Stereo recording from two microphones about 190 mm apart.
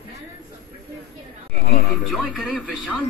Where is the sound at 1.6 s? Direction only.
55° left (ahead or behind).